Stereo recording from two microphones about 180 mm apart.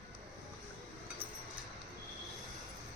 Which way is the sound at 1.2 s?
30° right (ahead or behind).